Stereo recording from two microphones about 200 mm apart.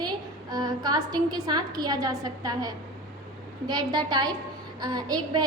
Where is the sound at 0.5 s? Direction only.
20° right (ahead or behind).